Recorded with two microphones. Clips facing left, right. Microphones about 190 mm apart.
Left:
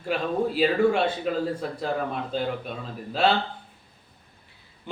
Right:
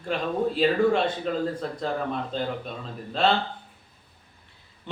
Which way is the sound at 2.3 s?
5° left (ahead or behind).